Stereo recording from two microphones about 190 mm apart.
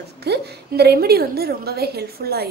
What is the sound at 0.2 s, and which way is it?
A woman's voice, 60° right (ahead or behind).